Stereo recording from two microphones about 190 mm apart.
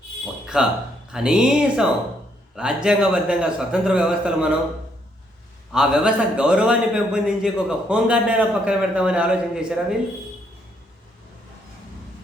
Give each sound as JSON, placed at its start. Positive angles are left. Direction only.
{"t": 0.4, "sound": "a sound", "side_deg": -5}
{"t": 1.1, "sound": "a man's voice", "side_deg": -5}
{"t": 5.7, "sound": "a man's voice", "side_deg": -5}